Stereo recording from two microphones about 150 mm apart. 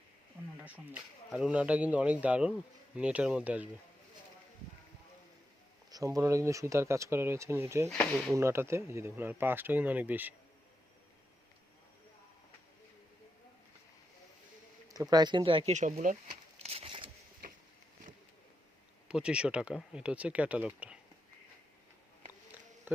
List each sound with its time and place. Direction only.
0.6 s speech: 10° right (ahead or behind)
5.9 s speech: 20° right (ahead or behind)
7.9 s speech: centre (ahead or behind)
8.4 s speech: 15° right (ahead or behind)
15.1 s speech: 30° right (ahead or behind)
15.7 s speech: 55° right (ahead or behind)
16.6 s a sound: 45° right (ahead or behind)
19.0 s speech: 5° right (ahead or behind)